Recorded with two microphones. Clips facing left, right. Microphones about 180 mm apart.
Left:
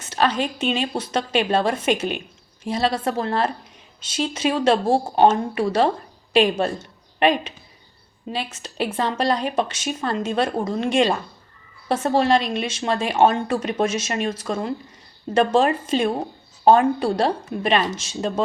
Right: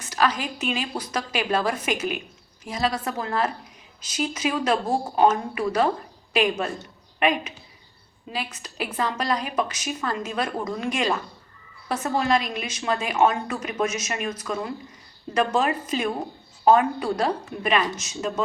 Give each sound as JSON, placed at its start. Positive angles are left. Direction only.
{"t": 0.0, "sound": "speech", "side_deg": 25}